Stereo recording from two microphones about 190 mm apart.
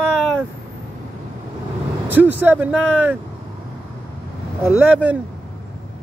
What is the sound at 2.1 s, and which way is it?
Speech, 10° right (ahead or behind).